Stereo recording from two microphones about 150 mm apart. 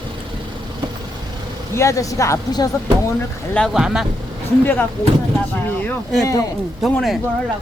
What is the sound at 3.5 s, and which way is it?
Speech, centre (ahead or behind).